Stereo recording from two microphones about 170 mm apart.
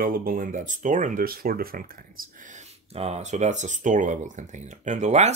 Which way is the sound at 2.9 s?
40° right (ahead or behind).